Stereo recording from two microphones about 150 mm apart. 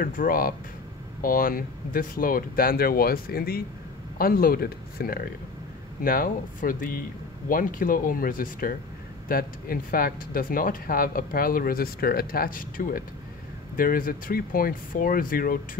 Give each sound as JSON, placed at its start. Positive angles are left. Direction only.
{"t": 0.0, "sound": "speech", "side_deg": 70}
{"t": 4.2, "sound": "speech", "side_deg": 75}
{"t": 6.0, "sound": "speech", "side_deg": 70}